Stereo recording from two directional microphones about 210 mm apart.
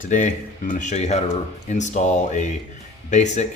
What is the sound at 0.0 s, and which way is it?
Speech, 35° left (ahead or behind).